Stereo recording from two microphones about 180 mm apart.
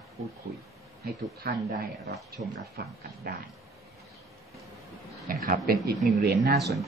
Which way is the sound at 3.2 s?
55° right (ahead or behind).